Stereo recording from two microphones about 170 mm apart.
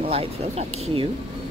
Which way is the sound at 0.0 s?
35° right (ahead or behind).